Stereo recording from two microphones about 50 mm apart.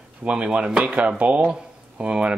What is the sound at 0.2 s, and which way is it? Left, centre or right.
Speech, right.